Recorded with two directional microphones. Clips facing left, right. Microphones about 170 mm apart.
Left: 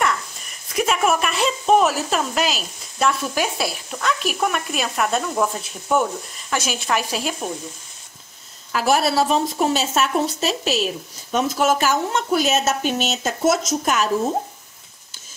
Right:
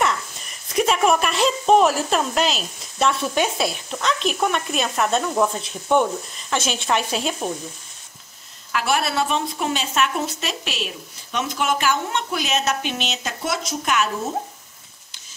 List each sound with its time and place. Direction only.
0.7 s a woman's voice: centre (ahead or behind)
8.7 s speech: 40° left (ahead or behind)